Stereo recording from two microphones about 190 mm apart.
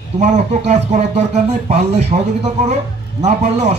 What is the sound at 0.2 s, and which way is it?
A man's voice, 35° right (ahead or behind).